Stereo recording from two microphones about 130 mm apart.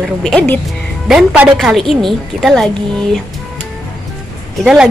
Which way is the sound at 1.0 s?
5° right (ahead or behind).